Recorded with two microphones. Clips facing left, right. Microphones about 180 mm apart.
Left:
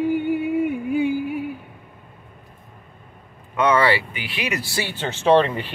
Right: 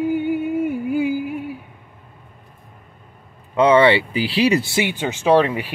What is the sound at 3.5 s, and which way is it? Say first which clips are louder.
Speech: right 5 dB; 25° right (ahead or behind).